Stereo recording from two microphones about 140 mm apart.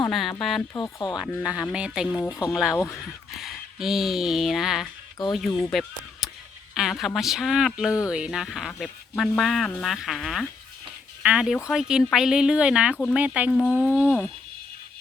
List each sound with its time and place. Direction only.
0.1 s speech: centre (ahead or behind)
0.7 s speech: 25° left (ahead or behind)
1.2 s speech: centre (ahead or behind)
2.7 s speech: 20° left (ahead or behind)
3.4 s speech: centre (ahead or behind)
13.5 s speech: 15° left (ahead or behind)